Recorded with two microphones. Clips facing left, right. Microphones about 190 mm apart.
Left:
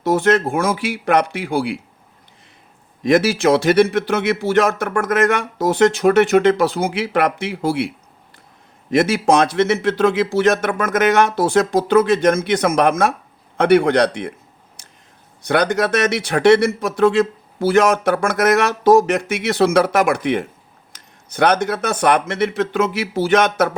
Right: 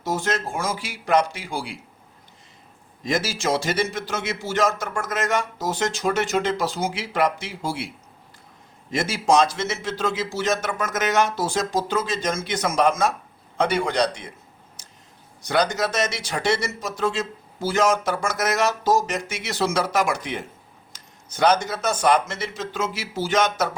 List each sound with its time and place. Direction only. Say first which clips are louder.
0.0 s speech: left 10 dB; 60° left (ahead or behind)
3.0 s speech: left 10 dB; 60° left (ahead or behind)
14.8 s a sound: left 2 dB; 60° left (ahead or behind)
15.4 s speech: left 5 dB; 60° left (ahead or behind)